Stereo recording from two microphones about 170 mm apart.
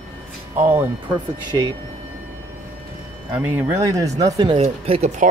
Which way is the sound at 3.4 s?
10° right (ahead or behind).